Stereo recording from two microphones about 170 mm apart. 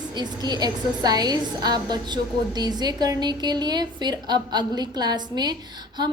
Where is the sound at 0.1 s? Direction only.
25° right (ahead or behind).